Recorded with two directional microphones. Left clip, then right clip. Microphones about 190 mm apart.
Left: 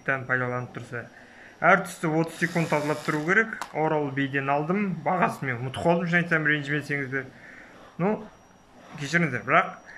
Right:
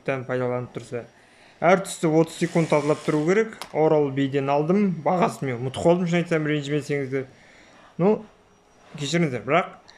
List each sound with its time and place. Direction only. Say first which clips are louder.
0.0 s speech: even; 15° right (ahead or behind)